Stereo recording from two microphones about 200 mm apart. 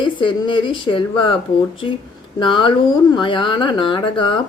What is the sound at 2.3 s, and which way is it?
Speech, 25° left (ahead or behind).